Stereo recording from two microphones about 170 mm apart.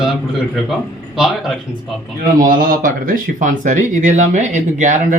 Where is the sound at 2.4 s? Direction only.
55° right (ahead or behind).